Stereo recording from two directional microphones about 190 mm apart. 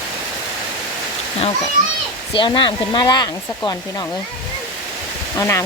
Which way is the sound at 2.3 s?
25° left (ahead or behind).